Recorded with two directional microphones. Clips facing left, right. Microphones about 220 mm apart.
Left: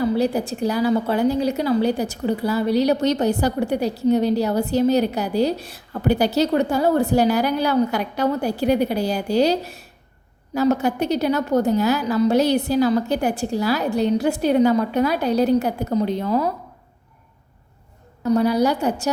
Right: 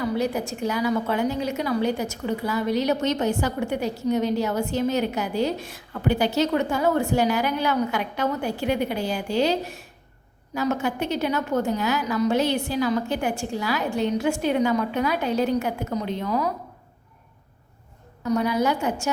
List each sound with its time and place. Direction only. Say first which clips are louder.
0.0 s a woman's voice: left 5 dB; 35° left (ahead or behind)
18.2 s a woman's voice: left 5 dB; 35° left (ahead or behind)